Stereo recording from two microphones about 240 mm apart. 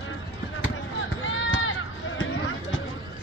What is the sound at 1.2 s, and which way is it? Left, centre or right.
Run, left.